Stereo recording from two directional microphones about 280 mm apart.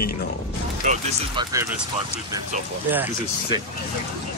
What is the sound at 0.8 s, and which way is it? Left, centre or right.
Speech, centre.